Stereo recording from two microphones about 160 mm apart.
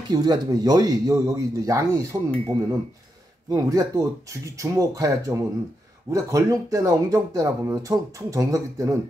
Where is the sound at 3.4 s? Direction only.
20° right (ahead or behind).